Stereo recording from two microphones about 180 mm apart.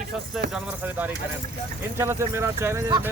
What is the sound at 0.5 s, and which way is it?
Speech, 10° right (ahead or behind).